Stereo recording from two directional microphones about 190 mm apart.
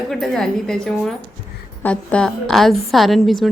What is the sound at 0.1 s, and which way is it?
A woman's voice, 5° left (ahead or behind).